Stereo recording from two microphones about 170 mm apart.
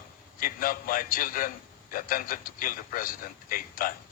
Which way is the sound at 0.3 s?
55° left (ahead or behind).